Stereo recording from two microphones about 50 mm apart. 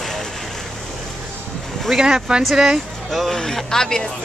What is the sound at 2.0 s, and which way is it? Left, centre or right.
Speech, centre.